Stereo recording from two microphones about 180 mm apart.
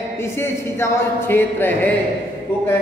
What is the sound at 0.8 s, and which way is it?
A man's voice, 10° left (ahead or behind).